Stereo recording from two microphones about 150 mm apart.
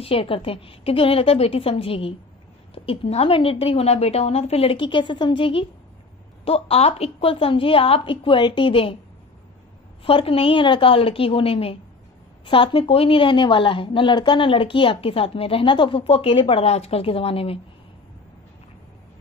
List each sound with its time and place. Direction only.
0.0 s a woman's voice: 40° left (ahead or behind)
10.0 s a woman's voice: 40° left (ahead or behind)